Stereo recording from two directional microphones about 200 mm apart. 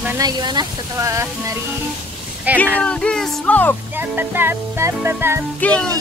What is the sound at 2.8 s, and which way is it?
Music, 5° left (ahead or behind).